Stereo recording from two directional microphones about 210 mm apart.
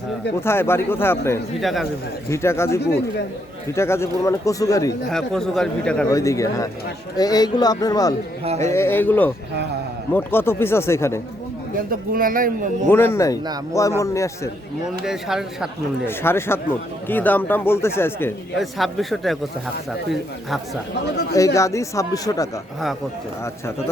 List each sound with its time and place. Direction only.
0.4 s speech: 10° left (ahead or behind)
1.6 s a man's voice: centre (ahead or behind)
2.3 s speech: 10° left (ahead or behind)
5.1 s a man's voice: centre (ahead or behind)
6.1 s speech: 15° left (ahead or behind)
8.4 s speech: 30° right (ahead or behind)
8.7 s speech: 10° left (ahead or behind)
11.9 s speech: 40° right (ahead or behind)
12.9 s speech: 10° left (ahead or behind)
15.0 s a man's voice: centre (ahead or behind)
16.0 s speech: 10° left (ahead or behind)
18.6 s a man's voice: centre (ahead or behind)
21.3 s speech: 15° left (ahead or behind)